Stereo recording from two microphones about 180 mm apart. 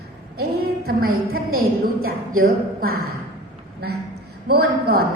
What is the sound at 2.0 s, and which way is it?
Speech, 55° right (ahead or behind).